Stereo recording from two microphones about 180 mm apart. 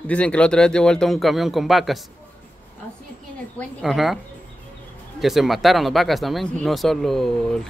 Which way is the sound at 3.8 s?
Centre (ahead or behind).